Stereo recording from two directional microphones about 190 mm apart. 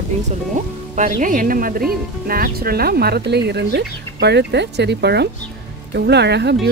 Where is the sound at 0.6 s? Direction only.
40° right (ahead or behind).